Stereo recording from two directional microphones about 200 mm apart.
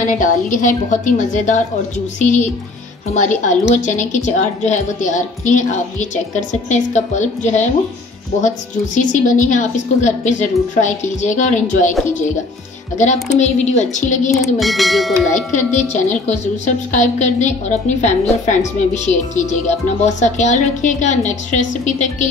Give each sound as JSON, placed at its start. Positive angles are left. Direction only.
{"t": 0.0, "sound": "speech", "side_deg": 45}
{"t": 12.9, "sound": "speech", "side_deg": 35}
{"t": 14.6, "sound": "speech", "side_deg": 0}
{"t": 15.5, "sound": "speech", "side_deg": 35}